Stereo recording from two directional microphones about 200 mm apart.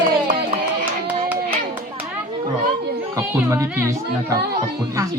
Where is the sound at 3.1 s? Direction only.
15° right (ahead or behind).